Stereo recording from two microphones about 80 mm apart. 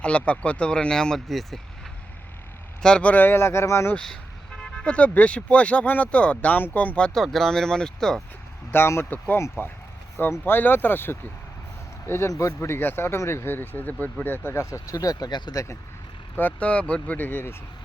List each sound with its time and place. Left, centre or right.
0.0 s speech: centre
2.8 s speech: centre; by 3.9 s left
3.9 s speech: centre
8.7 s speech: left
10.4 s speech: left
16.4 s speech: centre